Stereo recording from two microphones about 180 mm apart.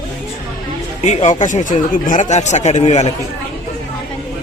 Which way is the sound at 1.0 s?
40° left (ahead or behind).